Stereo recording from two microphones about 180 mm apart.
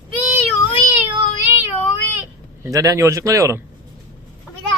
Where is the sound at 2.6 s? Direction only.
20° right (ahead or behind).